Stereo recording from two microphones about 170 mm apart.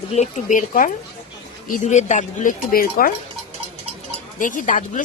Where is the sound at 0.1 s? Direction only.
40° left (ahead or behind).